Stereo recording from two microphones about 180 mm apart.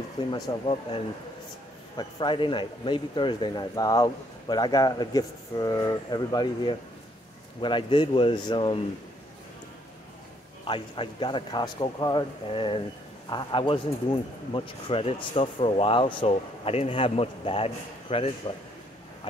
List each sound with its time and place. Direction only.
0.3 s speech: 30° left (ahead or behind)
10.6 s speech: 30° left (ahead or behind)